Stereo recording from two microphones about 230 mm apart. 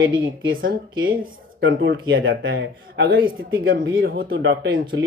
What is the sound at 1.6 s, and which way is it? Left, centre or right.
Speech, right.